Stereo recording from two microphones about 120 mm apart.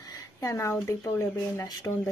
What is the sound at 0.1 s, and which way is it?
Speech, 25° left (ahead or behind).